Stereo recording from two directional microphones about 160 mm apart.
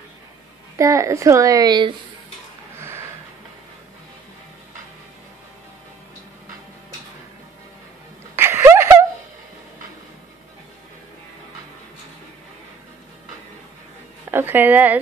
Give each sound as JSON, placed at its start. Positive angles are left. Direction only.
{"t": 0.7, "sound": "a woman's voice", "side_deg": -20}
{"t": 8.4, "sound": "a sound", "side_deg": -15}
{"t": 14.3, "sound": "speech", "side_deg": -10}